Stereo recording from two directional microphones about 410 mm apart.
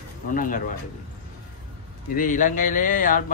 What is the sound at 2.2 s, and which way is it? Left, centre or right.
Speech, centre.